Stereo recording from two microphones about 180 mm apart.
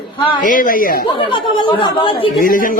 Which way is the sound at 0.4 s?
50° left (ahead or behind).